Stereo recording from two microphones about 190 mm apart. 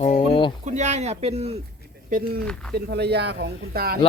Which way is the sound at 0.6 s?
40° right (ahead or behind).